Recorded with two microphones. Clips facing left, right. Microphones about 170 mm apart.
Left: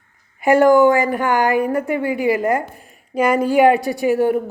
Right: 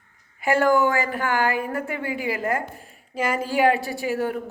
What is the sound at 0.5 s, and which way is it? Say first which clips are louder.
Speech: left 8 dB; 15° left (ahead or behind).